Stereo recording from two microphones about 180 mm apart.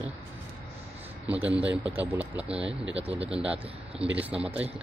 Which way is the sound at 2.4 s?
30° right (ahead or behind).